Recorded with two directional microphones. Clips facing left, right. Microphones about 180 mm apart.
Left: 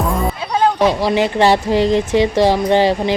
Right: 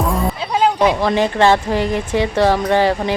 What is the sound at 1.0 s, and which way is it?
Speech, 15° left (ahead or behind).